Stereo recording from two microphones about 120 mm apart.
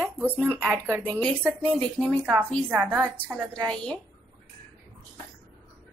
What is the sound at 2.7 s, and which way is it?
Speech, 15° right (ahead or behind).